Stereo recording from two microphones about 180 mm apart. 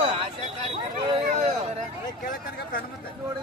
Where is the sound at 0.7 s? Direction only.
35° right (ahead or behind).